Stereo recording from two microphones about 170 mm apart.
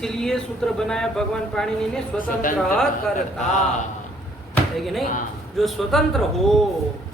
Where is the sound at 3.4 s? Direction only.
45° left (ahead or behind).